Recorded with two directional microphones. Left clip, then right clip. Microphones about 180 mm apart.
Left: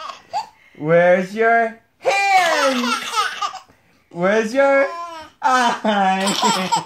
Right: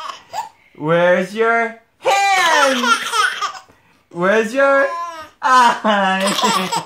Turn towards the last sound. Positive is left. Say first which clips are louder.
# right 1 dB
turn(degrees=-15)  # may be behind; listen again after turning